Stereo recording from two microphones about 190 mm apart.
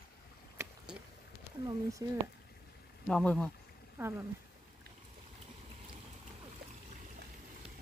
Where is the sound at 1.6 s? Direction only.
15° right (ahead or behind).